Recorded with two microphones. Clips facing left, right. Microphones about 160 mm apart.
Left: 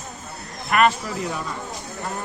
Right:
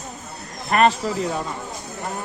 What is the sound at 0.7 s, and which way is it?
Speech, 35° right (ahead or behind).